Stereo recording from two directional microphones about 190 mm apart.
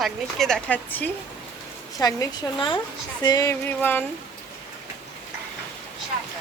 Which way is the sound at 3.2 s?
20° left (ahead or behind).